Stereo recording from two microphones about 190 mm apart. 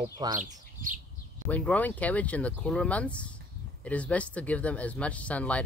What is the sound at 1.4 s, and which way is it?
Speech, 10° left (ahead or behind).